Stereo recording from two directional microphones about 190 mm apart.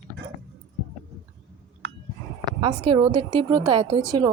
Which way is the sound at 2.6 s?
25° right (ahead or behind).